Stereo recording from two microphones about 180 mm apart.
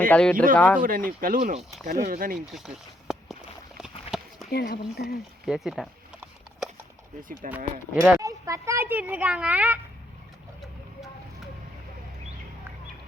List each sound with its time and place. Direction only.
0.1 s speech: 5° left (ahead or behind)
0.8 s speech: 50° right (ahead or behind)
2.5 s a sound: centre (ahead or behind)
4.5 s speech: 60° left (ahead or behind)
5.5 s a sound: centre (ahead or behind)
7.2 s speech: 50° right (ahead or behind)
7.5 s a child's voice: 15° right (ahead or behind)